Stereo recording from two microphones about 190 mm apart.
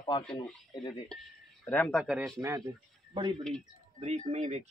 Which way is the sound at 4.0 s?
35° right (ahead or behind).